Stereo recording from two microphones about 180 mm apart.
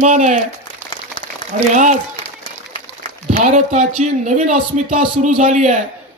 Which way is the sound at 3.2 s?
40° right (ahead or behind).